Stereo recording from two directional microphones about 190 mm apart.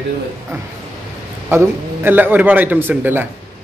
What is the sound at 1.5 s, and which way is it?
A man's voice, 10° right (ahead or behind).